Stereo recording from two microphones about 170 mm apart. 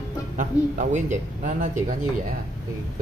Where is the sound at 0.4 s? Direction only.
50° right (ahead or behind).